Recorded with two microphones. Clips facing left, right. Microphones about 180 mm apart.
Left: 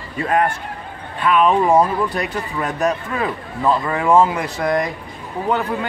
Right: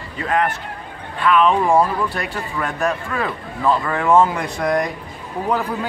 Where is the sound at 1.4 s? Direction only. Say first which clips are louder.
Left 2 dB; 10° left (ahead or behind).